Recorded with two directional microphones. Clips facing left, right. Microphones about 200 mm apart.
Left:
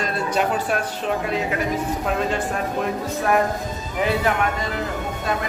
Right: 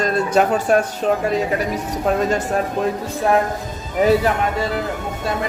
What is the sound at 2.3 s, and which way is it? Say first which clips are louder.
Speech: right 4 dB; 40° right (ahead or behind).